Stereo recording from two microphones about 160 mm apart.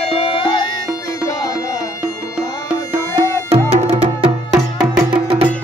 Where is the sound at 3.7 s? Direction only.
40° right (ahead or behind).